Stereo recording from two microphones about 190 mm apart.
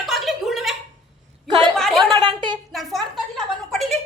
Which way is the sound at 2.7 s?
Centre (ahead or behind).